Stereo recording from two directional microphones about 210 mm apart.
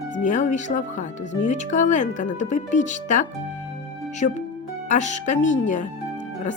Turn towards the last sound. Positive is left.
turn(degrees=35)  # may be behind; listen again after turning